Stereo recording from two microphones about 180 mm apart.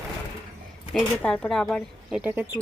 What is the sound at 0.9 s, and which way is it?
Speech, 5° left (ahead or behind).